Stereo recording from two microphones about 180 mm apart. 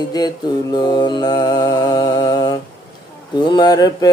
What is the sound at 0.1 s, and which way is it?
Mantra, 20° left (ahead or behind).